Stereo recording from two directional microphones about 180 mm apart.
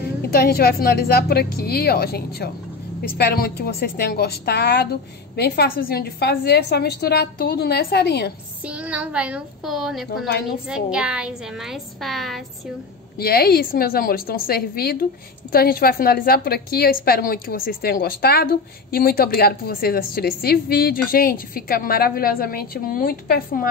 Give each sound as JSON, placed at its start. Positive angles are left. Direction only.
{"t": 0.2, "sound": "a woman's voice", "side_deg": 60}
{"t": 8.6, "sound": "a woman's voice", "side_deg": -5}
{"t": 13.2, "sound": "a woman's voice", "side_deg": 60}